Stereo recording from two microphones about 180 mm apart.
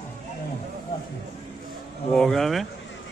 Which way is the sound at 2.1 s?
5° left (ahead or behind).